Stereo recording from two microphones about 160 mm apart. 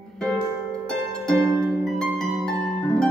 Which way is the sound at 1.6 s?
5° left (ahead or behind).